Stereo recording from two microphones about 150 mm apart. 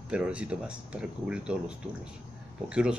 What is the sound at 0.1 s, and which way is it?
A man's voice, 10° right (ahead or behind).